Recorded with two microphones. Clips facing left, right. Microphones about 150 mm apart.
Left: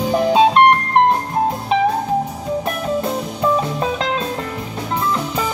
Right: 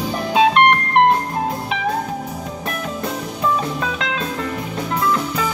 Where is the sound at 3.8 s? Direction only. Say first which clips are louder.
Left 3 dB; 35° left (ahead or behind).